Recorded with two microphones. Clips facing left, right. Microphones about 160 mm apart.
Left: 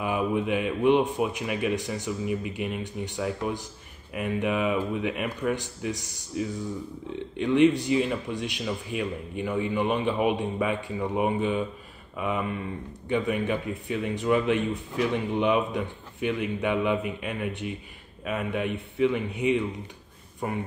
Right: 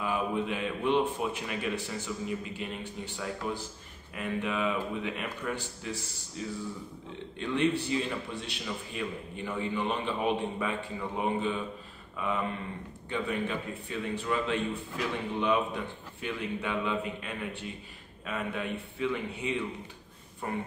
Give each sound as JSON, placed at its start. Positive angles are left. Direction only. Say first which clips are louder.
{"t": 0.0, "sound": "a man's voice", "louder": "left 4 dB", "side_deg": 15}
{"t": 13.1, "sound": "a man's voice", "louder": "left 6 dB", "side_deg": 15}